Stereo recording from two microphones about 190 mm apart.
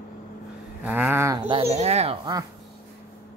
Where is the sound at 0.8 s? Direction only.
10° right (ahead or behind); by 2.1 s 35° right (ahead or behind).